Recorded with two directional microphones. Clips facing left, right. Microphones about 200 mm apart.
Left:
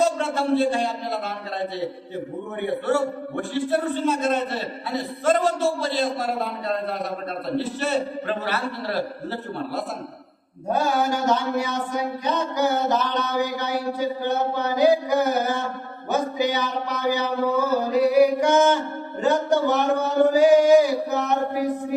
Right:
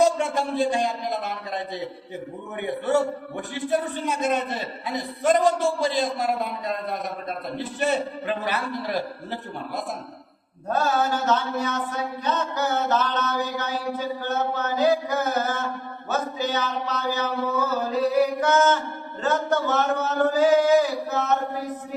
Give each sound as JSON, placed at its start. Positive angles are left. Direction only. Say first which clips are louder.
{"t": 0.0, "sound": "speech", "louder": "right 1 dB", "side_deg": -15}
{"t": 2.6, "sound": "a man's voice", "louder": "even", "side_deg": -15}
{"t": 10.7, "sound": "a sound", "louder": "left 1 dB", "side_deg": 10}